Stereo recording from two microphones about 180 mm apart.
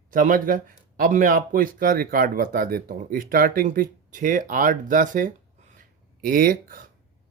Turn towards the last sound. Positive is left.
turn(degrees=-50)  # may be behind; listen again after turning